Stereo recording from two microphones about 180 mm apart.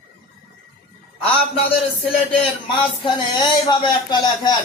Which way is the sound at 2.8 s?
25° left (ahead or behind).